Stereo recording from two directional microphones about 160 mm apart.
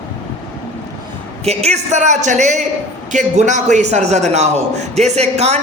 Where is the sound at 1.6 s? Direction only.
50° right (ahead or behind).